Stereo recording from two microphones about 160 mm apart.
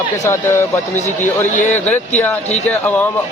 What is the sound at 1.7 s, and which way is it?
Speech, 10° left (ahead or behind).